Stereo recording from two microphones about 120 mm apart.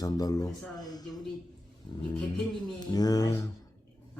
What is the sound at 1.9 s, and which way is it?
A man's voice, 35° left (ahead or behind).